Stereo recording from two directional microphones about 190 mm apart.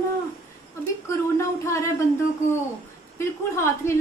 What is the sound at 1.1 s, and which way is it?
Speech, 15° left (ahead or behind).